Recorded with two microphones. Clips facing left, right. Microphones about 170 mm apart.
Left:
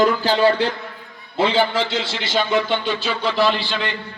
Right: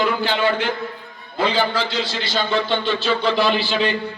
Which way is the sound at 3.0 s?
5° left (ahead or behind).